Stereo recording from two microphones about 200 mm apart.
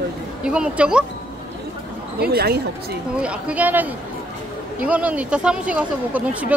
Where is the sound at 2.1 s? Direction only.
50° right (ahead or behind).